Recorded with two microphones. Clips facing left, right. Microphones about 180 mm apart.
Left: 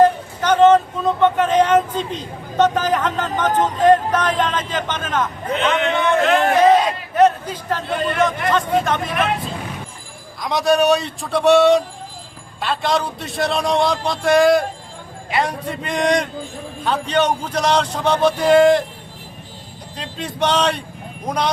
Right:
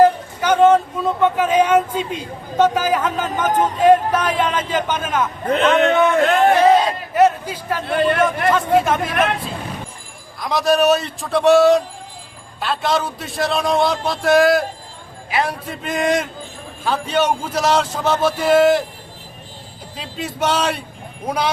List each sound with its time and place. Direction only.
0.0 s speech: 10° right (ahead or behind)
5.5 s a man's voice: 45° right (ahead or behind)
6.6 s a sound: 10° right (ahead or behind)
8.8 s speech: 5° right (ahead or behind)
10.4 s a man's voice: centre (ahead or behind)
20.0 s a man's voice: 5° right (ahead or behind)